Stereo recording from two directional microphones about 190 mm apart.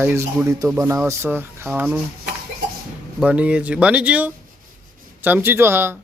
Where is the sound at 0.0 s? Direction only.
10° right (ahead or behind).